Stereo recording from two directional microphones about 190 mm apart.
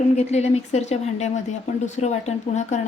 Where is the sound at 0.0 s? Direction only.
35° left (ahead or behind).